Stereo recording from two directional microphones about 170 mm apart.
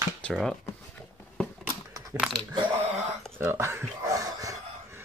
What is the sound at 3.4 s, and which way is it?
Speech, 15° right (ahead or behind).